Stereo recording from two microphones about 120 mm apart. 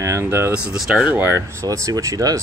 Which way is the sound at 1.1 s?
20° right (ahead or behind).